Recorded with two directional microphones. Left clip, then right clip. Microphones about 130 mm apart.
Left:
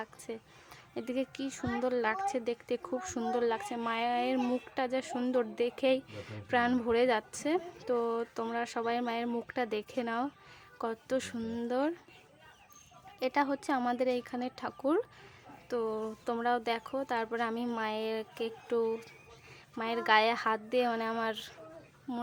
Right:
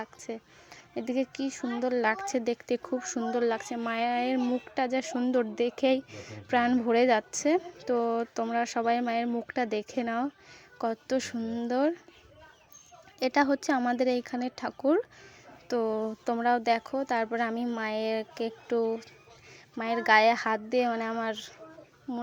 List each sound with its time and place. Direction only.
0.3 s a woman's voice: 20° right (ahead or behind)
2.0 s a woman's voice: 30° right (ahead or behind); by 11.7 s 10° right (ahead or behind)
11.7 s a woman's voice: 20° right (ahead or behind)
13.1 s a woman's voice: 25° right (ahead or behind)
15.7 s a woman's voice: 30° right (ahead or behind); by 21.5 s 15° right (ahead or behind)
22.1 s a child's voice: centre (ahead or behind)